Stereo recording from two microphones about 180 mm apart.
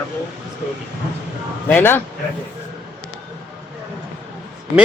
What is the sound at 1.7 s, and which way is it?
Speech, 10° left (ahead or behind).